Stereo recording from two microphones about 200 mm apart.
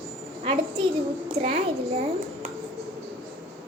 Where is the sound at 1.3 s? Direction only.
30° right (ahead or behind).